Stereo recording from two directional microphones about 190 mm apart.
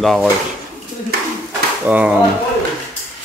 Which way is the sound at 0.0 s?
Centre (ahead or behind).